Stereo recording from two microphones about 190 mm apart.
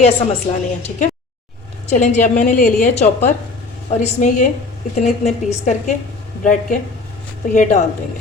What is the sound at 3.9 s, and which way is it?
A woman's voice, 40° left (ahead or behind).